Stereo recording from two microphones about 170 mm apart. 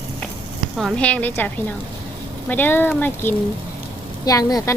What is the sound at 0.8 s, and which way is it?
Speech, 5° left (ahead or behind).